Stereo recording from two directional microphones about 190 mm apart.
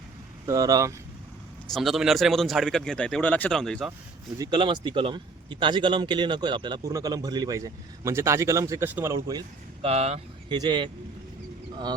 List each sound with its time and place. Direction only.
0.4 s speech: 20° right (ahead or behind)
1.7 s speech: centre (ahead or behind)
4.4 s speech: 25° right (ahead or behind)
9.8 s speech: 35° right (ahead or behind)
10.5 s speech: 20° right (ahead or behind)